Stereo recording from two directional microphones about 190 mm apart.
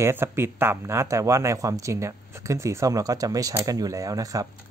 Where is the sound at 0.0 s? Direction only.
10° right (ahead or behind).